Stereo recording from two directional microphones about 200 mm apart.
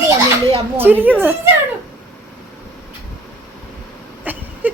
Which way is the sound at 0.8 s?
10° right (ahead or behind).